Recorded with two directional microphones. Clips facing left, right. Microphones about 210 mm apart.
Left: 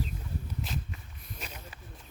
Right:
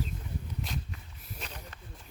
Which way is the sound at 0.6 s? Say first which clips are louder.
Left 1 dB; 5° left (ahead or behind).